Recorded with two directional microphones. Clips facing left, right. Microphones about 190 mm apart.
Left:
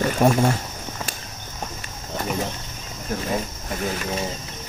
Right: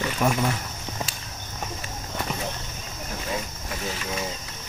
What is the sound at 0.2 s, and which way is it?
Speech, 35° left (ahead or behind).